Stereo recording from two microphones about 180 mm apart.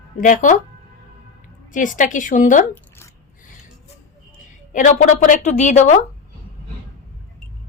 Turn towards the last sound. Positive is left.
turn(degrees=40)  # may be behind; listen again after turning